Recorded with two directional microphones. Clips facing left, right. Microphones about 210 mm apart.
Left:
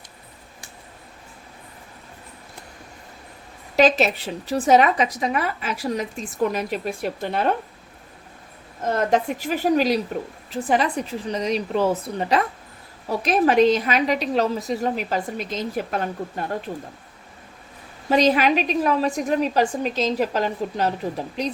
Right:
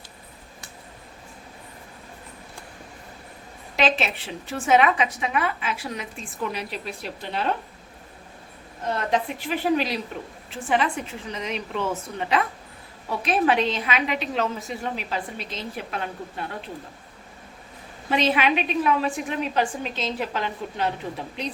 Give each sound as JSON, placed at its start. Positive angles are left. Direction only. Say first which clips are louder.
{"t": 3.8, "sound": "a woman's voice", "louder": "left 6 dB", "side_deg": 40}
{"t": 8.8, "sound": "a woman's voice", "louder": "left 4 dB", "side_deg": 45}
{"t": 18.1, "sound": "a woman's voice", "louder": "left 4 dB", "side_deg": 40}